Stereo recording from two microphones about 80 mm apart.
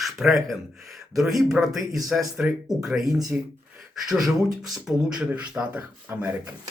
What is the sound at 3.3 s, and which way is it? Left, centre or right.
Speech, centre.